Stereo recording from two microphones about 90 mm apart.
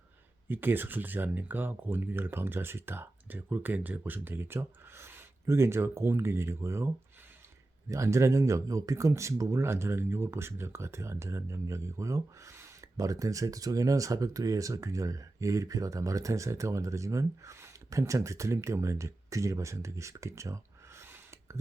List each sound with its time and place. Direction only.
0.4 s speech: 25° right (ahead or behind)